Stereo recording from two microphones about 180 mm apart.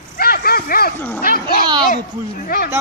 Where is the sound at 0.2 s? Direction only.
55° left (ahead or behind).